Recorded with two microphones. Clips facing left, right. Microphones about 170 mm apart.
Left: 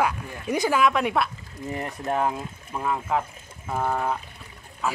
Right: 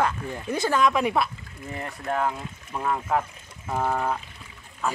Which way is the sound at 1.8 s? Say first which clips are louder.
Left 1 dB; 20° left (ahead or behind).